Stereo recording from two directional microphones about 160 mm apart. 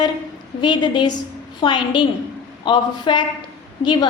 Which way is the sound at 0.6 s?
30° left (ahead or behind).